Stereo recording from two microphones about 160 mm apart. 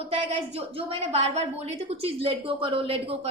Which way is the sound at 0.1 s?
40° right (ahead or behind).